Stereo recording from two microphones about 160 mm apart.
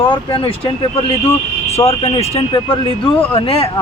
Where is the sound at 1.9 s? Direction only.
35° left (ahead or behind).